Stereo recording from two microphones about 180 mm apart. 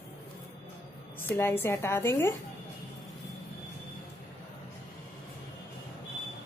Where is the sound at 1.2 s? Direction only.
10° left (ahead or behind).